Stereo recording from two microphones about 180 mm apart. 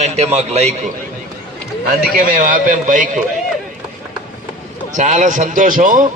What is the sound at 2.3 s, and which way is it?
Speech, 50° right (ahead or behind).